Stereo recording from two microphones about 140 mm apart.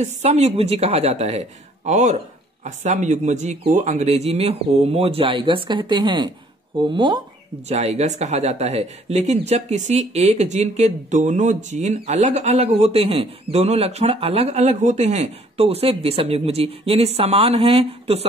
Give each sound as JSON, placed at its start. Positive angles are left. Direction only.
{"t": 0.0, "sound": "speech", "side_deg": -55}
{"t": 7.6, "sound": "speech", "side_deg": -50}